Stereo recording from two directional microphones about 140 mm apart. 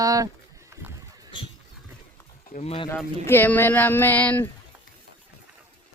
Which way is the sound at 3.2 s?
15° left (ahead or behind).